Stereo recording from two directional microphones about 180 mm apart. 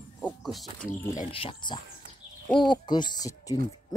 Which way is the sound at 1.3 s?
30° left (ahead or behind).